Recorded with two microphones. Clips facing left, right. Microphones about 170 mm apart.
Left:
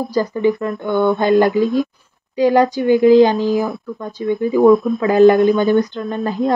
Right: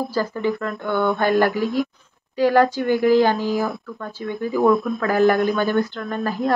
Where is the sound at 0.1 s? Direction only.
15° left (ahead or behind).